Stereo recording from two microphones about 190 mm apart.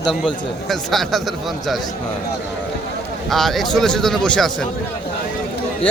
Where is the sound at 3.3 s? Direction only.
Centre (ahead or behind).